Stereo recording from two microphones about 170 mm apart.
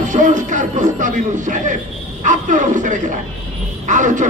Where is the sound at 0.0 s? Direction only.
45° right (ahead or behind).